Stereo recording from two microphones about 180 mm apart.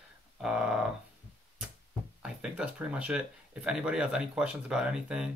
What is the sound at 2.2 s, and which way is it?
Speech, 5° right (ahead or behind).